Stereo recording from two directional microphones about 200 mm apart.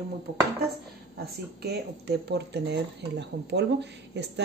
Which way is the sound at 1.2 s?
55° right (ahead or behind).